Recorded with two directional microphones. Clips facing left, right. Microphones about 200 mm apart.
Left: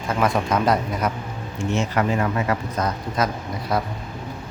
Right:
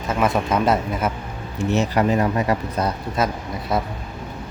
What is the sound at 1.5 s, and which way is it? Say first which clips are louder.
Speech: right 3 dB; 35° right (ahead or behind).